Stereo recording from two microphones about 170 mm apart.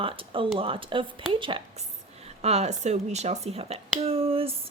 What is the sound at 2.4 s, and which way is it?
Speech, 40° right (ahead or behind).